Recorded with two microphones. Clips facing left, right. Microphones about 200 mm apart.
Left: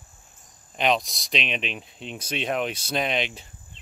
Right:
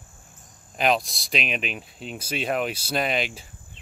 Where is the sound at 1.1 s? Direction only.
5° right (ahead or behind).